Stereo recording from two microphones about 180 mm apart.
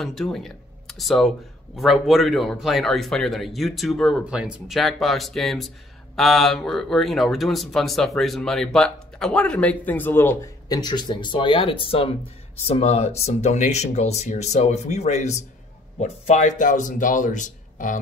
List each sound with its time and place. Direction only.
0.0 s speech: centre (ahead or behind); by 17.9 s 45° left (ahead or behind)